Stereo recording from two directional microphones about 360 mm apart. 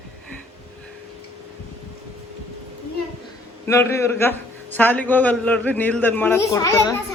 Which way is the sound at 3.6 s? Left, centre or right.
Centre.